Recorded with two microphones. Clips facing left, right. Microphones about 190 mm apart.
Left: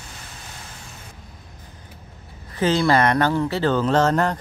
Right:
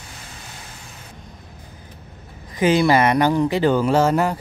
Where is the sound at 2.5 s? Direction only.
15° right (ahead or behind).